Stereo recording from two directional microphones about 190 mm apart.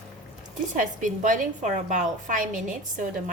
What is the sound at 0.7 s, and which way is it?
A woman's voice, 40° right (ahead or behind).